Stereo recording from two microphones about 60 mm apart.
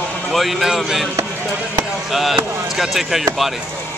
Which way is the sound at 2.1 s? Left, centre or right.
Centre.